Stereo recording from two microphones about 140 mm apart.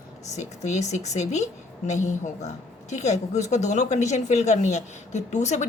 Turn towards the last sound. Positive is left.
turn(degrees=55)  # may be behind; listen again after turning